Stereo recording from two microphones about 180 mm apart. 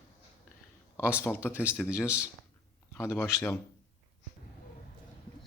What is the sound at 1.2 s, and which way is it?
Speech, 10° left (ahead or behind).